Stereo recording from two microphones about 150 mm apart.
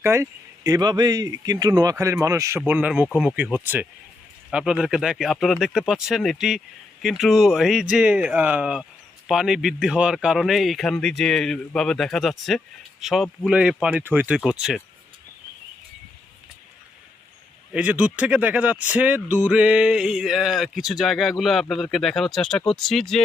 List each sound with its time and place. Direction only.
0.0 s speech: 20° right (ahead or behind)
17.7 s speech: 10° right (ahead or behind)